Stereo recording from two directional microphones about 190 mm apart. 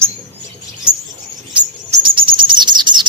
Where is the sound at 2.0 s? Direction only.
25° right (ahead or behind).